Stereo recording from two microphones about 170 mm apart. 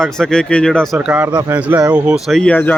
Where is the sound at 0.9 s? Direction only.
10° right (ahead or behind); by 2.7 s 10° left (ahead or behind).